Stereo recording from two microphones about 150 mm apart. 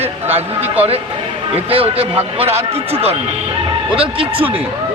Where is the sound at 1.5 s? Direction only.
40° right (ahead or behind).